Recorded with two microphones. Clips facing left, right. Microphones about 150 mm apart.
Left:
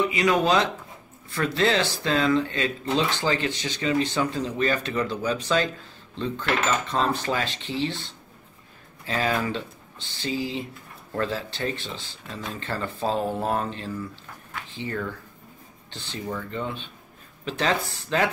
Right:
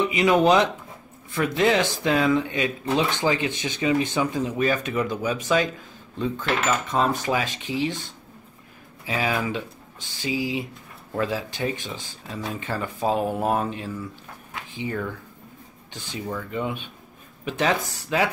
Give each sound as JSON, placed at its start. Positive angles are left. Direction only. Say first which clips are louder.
{"t": 0.0, "sound": "speech", "louder": "right 3 dB", "side_deg": -20}
{"t": 14.5, "sound": "a sound", "louder": "right 2 dB", "side_deg": -15}
{"t": 15.9, "sound": "speech", "louder": "right 1 dB", "side_deg": -10}